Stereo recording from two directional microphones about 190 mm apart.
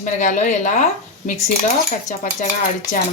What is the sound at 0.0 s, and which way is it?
A woman's voice, 40° left (ahead or behind).